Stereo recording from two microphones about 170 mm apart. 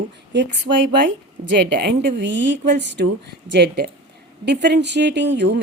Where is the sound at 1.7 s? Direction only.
80° right.